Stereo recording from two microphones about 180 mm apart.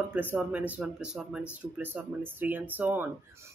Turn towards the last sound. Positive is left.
turn(degrees=-10)  # may be behind; listen again after turning